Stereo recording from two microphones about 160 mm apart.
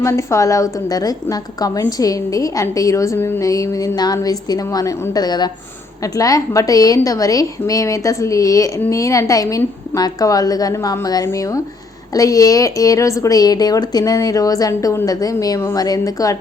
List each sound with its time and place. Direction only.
0.0 s a woman's voice: 20° left (ahead or behind)